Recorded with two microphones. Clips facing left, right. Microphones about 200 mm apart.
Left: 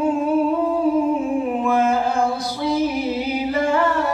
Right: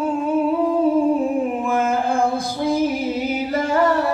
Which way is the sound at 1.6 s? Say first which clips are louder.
Left 2 dB; 50° right (ahead or behind).